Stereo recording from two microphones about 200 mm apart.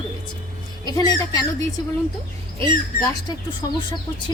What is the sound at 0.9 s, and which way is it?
Speech, 20° left (ahead or behind).